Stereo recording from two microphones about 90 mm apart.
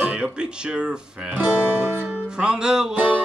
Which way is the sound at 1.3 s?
20° right (ahead or behind).